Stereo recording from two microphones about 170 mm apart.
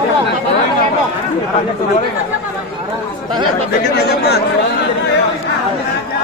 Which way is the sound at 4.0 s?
75° left (ahead or behind).